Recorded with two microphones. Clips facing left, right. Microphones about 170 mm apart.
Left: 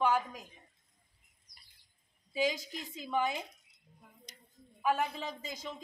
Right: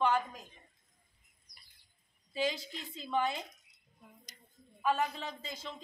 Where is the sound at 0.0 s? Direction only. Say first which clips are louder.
Even; 10° left (ahead or behind).